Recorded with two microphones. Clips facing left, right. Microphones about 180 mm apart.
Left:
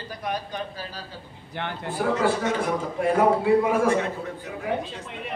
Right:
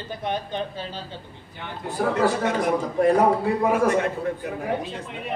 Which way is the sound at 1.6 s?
80° left.